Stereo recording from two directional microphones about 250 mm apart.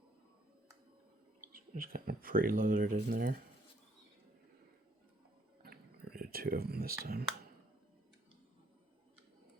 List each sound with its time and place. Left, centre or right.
1.4 s speech: right
6.1 s speech: right